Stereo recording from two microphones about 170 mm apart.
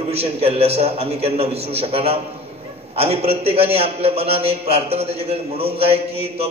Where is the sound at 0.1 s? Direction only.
35° right (ahead or behind).